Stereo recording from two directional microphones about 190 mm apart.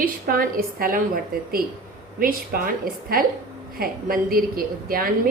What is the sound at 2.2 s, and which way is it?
A woman's voice, 50° right (ahead or behind).